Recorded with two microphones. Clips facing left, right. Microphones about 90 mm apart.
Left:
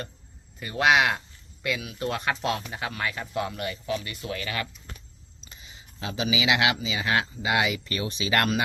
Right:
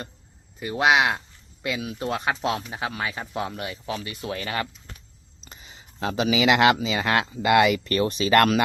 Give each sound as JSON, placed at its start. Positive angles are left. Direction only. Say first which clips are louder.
{"t": 0.6, "sound": "speech", "louder": "right 1 dB", "side_deg": -20}
{"t": 2.3, "sound": "speech", "louder": "right 2 dB", "side_deg": -10}
{"t": 5.5, "sound": "a sound", "louder": "right 3 dB", "side_deg": -40}
{"t": 6.1, "sound": "speech", "louder": "right 5 dB", "side_deg": -55}